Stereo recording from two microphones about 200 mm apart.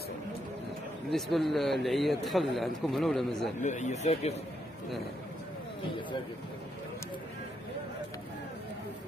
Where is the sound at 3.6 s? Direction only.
35° left (ahead or behind).